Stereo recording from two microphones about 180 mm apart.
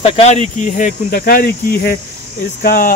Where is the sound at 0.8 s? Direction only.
50° left (ahead or behind).